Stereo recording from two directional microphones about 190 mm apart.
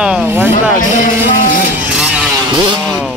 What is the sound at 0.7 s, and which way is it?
Music, 45° left (ahead or behind).